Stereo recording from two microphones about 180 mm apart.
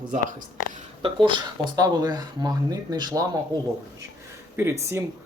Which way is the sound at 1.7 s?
20° right (ahead or behind).